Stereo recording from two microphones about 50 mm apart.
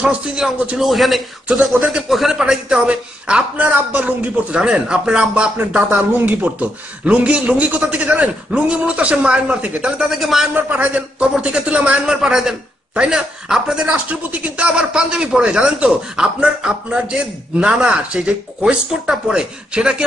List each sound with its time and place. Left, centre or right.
0.4 s a man's voice: centre; by 5.9 s right
5.9 s a man's voice: right; by 10.5 s centre
10.5 s a man's voice: right; by 12.5 s centre
12.9 s speech: right
13.9 s a man's voice: right